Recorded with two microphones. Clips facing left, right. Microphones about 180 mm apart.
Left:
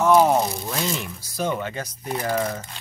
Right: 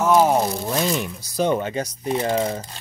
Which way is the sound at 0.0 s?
5° right (ahead or behind).